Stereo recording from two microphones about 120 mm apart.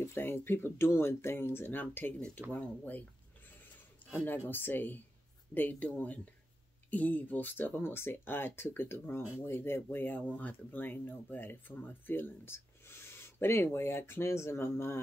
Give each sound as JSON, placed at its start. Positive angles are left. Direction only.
{"t": 0.0, "sound": "speech", "side_deg": 20}
{"t": 4.1, "sound": "speech", "side_deg": 15}